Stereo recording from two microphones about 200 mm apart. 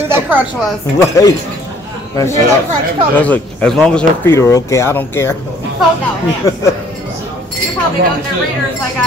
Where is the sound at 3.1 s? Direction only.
5° left (ahead or behind).